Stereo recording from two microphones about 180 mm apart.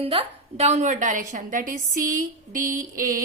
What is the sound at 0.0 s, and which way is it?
A woman's voice, 30° right (ahead or behind).